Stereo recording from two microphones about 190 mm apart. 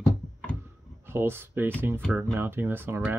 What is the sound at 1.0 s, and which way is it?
Speech, 10° right (ahead or behind).